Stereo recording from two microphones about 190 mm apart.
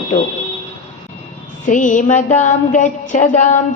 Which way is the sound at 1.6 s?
40° left (ahead or behind).